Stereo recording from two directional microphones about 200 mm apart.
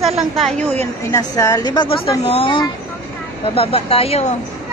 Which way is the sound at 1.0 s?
15° left (ahead or behind).